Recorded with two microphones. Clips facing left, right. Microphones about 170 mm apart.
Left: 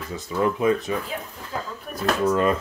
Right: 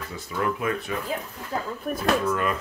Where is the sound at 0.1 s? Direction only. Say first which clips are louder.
Left 5 dB; 20° left (ahead or behind).